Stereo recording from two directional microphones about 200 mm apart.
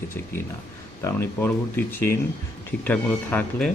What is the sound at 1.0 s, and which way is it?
Speech, 10° left (ahead or behind).